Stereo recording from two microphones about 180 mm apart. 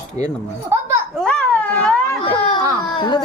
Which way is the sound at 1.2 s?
5° left (ahead or behind).